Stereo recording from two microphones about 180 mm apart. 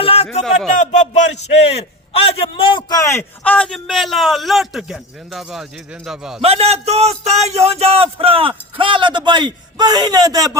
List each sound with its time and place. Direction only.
0.0 s a sound: 35° left (ahead or behind)
0.8 s a man's voice: 40° left (ahead or behind); by 6.4 s 5° right (ahead or behind)
6.4 s a man's voice: 35° right (ahead or behind)